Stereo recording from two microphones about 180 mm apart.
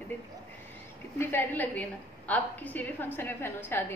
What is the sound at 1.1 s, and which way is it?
A woman's voice, 15° left (ahead or behind).